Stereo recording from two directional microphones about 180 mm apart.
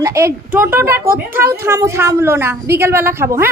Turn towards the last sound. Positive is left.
turn(degrees=-15)  # may be behind; listen again after turning